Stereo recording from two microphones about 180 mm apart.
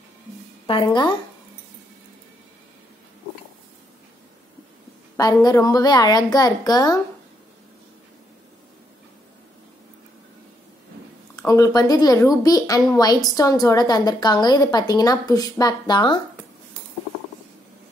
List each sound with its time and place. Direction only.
0.7 s a woman's voice: 25° left (ahead or behind)
5.1 s a woman's voice: 20° left (ahead or behind)
11.3 s a woman's voice: 20° left (ahead or behind)